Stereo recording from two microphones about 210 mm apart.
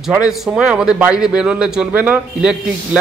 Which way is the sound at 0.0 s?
5° right (ahead or behind).